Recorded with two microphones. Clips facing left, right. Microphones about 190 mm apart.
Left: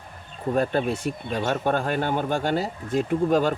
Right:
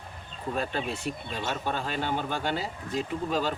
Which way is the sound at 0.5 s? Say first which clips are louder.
Left 8 dB; 50° left (ahead or behind).